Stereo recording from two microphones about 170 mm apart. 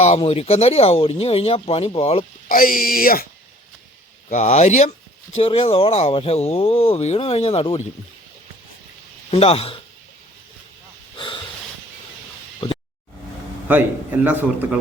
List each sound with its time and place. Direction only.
0.0 s speech: 40° left (ahead or behind)
2.5 s speech: 55° left (ahead or behind)
4.3 s speech: 45° left (ahead or behind)
9.3 s speech: 35° left (ahead or behind)
11.2 s snort: 30° left (ahead or behind)
12.6 s a sound: 35° left (ahead or behind)
14.3 s a man's voice: 10° right (ahead or behind)